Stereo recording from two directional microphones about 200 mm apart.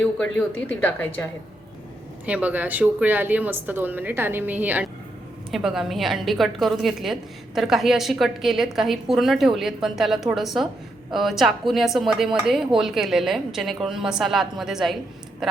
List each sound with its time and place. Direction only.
0.0 s speech: 5° left (ahead or behind)
2.2 s a woman's voice: 5° right (ahead or behind)